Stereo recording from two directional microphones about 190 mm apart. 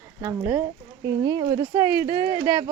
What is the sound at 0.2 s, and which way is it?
Speech, 15° right (ahead or behind).